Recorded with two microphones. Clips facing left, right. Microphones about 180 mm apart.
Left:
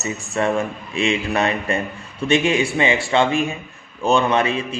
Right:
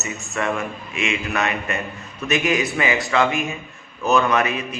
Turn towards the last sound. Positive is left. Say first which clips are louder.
# left 2 dB
turn(degrees=30)  # may be behind; listen again after turning